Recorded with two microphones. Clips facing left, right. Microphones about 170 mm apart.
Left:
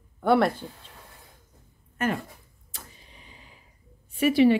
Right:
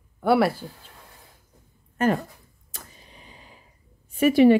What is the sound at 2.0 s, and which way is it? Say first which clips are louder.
Speech: right 5 dB; 40° right (ahead or behind).